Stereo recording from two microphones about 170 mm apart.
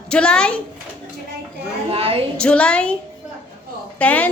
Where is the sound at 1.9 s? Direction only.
35° right (ahead or behind).